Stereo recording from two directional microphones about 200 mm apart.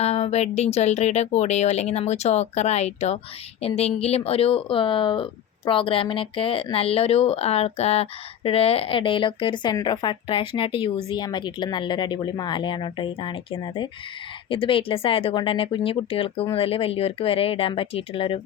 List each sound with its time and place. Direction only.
0.0 s speech: 30° left (ahead or behind)